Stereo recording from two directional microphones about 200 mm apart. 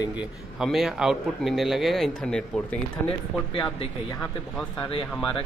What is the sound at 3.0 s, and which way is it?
Speech, 25° left (ahead or behind).